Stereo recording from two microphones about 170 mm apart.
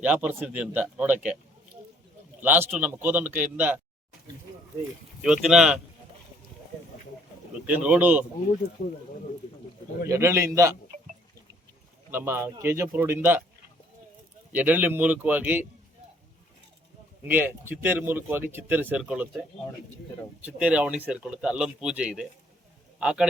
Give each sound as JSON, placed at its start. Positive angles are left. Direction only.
{"t": 0.0, "sound": "speech", "side_deg": -10}
{"t": 2.4, "sound": "speech", "side_deg": -10}
{"t": 5.2, "sound": "speech", "side_deg": -5}
{"t": 7.8, "sound": "speech", "side_deg": -10}
{"t": 10.1, "sound": "speech", "side_deg": -15}
{"t": 12.1, "sound": "speech", "side_deg": -15}
{"t": 14.5, "sound": "speech", "side_deg": -10}
{"t": 17.2, "sound": "speech", "side_deg": -10}